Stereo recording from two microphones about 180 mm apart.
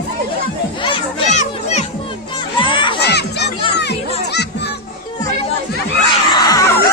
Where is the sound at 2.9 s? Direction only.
65° left (ahead or behind).